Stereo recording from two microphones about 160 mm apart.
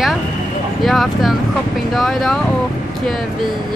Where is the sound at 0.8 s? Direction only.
Centre (ahead or behind).